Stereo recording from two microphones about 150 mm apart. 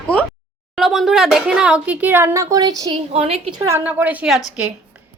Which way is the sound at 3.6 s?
15° right (ahead or behind).